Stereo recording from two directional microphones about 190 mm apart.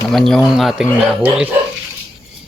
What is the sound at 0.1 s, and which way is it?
Speech, centre (ahead or behind).